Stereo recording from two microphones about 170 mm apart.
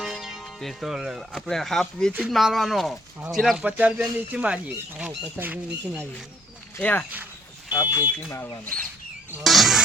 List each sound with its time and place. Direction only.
0.0 s speech: centre (ahead or behind)
6.7 s speech: 10° left (ahead or behind)
7.7 s smoke detector: 20° left (ahead or behind)
8.3 s speech: 20° left (ahead or behind)
9.4 s speech: centre (ahead or behind)